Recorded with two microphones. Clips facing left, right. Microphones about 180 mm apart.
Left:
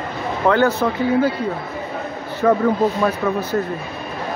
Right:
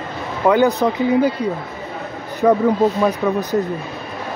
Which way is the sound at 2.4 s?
10° right (ahead or behind).